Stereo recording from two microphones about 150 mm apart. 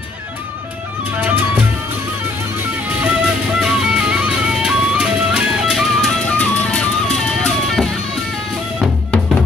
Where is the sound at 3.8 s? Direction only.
5° right (ahead or behind).